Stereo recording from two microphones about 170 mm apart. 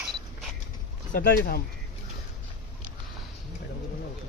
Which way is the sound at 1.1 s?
55° left (ahead or behind).